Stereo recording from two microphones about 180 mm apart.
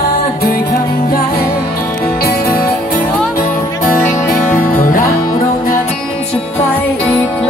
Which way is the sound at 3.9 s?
50° left (ahead or behind).